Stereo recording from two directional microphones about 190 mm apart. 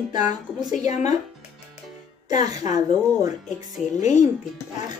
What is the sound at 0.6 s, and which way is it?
Speech, 20° right (ahead or behind).